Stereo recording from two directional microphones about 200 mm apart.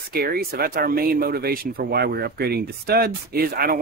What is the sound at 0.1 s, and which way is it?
Speech, 50° right (ahead or behind).